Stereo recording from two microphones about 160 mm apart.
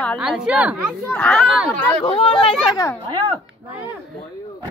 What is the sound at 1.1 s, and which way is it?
Speech, 5° left (ahead or behind).